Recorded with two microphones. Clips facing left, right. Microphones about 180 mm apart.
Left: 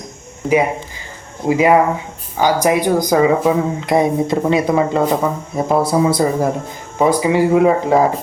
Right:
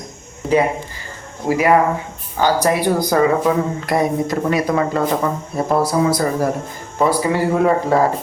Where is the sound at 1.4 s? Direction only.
20° left (ahead or behind).